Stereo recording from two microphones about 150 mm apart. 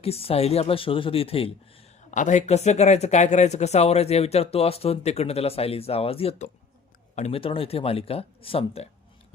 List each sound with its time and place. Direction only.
0.0 s speech: 40° left (ahead or behind)
2.0 s speech: 55° left (ahead or behind)